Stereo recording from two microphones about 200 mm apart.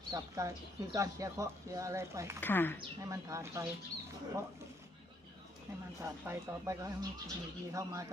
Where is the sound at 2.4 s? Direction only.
10° left (ahead or behind).